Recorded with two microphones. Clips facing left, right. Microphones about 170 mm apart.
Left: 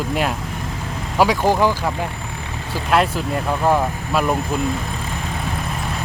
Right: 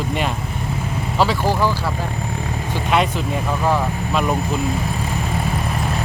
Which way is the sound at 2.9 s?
Centre (ahead or behind).